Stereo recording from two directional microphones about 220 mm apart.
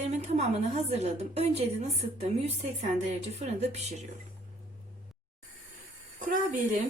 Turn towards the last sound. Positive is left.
turn(degrees=-35)  # may be behind; listen again after turning